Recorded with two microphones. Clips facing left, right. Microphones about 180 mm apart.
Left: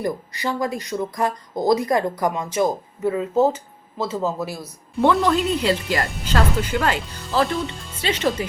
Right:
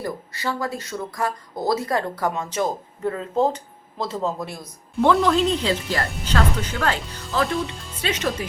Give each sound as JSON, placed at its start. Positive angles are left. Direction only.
{"t": 0.0, "sound": "speech", "side_deg": 15}
{"t": 7.0, "sound": "speech", "side_deg": 0}